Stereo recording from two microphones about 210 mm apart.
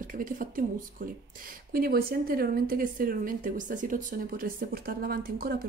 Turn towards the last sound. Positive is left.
turn(degrees=-45)  # may be behind; listen again after turning